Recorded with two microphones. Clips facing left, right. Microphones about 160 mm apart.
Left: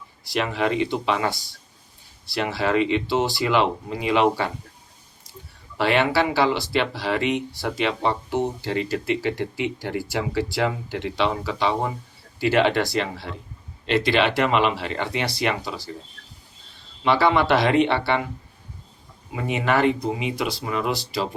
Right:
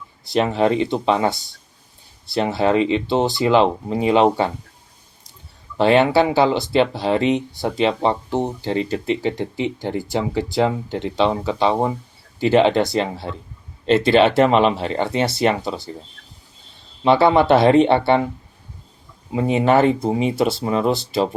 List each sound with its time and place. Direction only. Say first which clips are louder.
0.3 s speech: right 5 dB; 35° right (ahead or behind)
2.3 s speech: right 5 dB; 25° right (ahead or behind)
3.2 s speech: right 5 dB; 20° right (ahead or behind)
3.5 s speech: right 7 dB; 35° right (ahead or behind)
5.7 s speech: right 6 dB; 25° right (ahead or behind)
17.0 s speech: right 5 dB; 25° right (ahead or behind)
19.3 s speech: right 7 dB; 30° right (ahead or behind)